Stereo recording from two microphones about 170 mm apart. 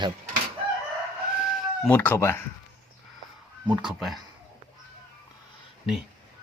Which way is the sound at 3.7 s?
Centre (ahead or behind).